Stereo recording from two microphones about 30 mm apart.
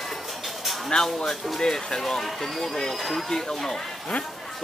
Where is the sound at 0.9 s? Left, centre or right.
Left.